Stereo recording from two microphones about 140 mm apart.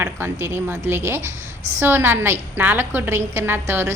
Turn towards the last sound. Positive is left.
turn(degrees=-15)  # may be behind; listen again after turning